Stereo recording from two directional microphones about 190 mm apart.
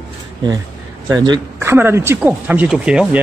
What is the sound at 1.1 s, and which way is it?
A man's voice, 20° right (ahead or behind).